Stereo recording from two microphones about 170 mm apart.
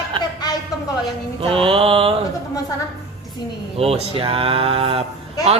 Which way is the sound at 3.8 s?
35° right (ahead or behind).